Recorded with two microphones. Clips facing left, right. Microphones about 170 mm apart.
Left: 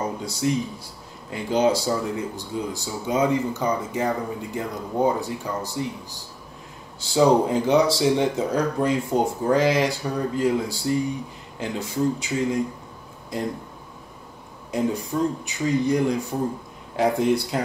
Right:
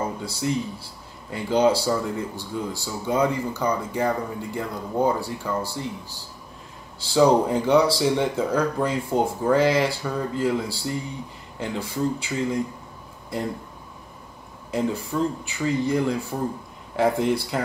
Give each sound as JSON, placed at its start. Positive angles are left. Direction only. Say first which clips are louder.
{"t": 0.2, "sound": "speech", "louder": "left 2 dB", "side_deg": 20}
{"t": 7.2, "sound": "speech", "louder": "even", "side_deg": 20}
{"t": 14.7, "sound": "speech", "louder": "left 1 dB", "side_deg": 15}